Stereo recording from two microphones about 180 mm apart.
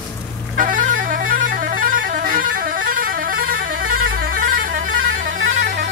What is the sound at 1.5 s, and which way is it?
Music, 50° right (ahead or behind).